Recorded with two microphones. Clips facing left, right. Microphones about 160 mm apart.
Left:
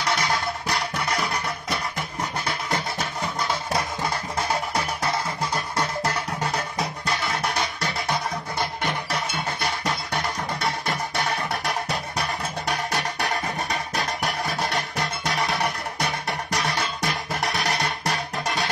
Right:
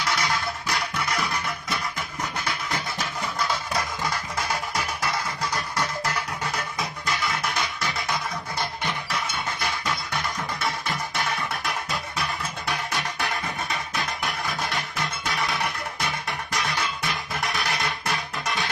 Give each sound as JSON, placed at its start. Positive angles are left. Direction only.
{"t": 0.0, "sound": "music", "side_deg": 30}
{"t": 3.0, "sound": "music", "side_deg": 30}